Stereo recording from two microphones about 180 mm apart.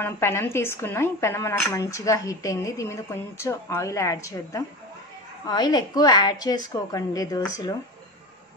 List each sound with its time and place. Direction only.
0.0 s a woman's voice: 15° left (ahead or behind)